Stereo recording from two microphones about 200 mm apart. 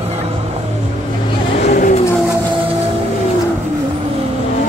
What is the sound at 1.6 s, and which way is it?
Vehicle, 40° left (ahead or behind).